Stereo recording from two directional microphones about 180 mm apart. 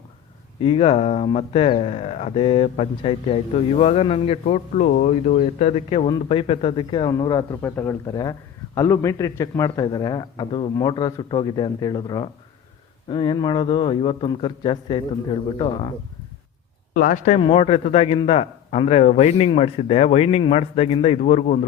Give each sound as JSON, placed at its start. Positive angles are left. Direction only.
{"t": 0.6, "sound": "a man's voice", "side_deg": 30}
{"t": 6.1, "sound": "a man's voice", "side_deg": 25}
{"t": 16.9, "sound": "speech", "side_deg": 50}
{"t": 17.4, "sound": "a man's voice", "side_deg": 30}